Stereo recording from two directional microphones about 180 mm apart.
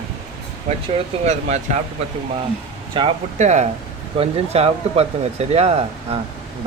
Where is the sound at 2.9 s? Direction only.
30° right (ahead or behind).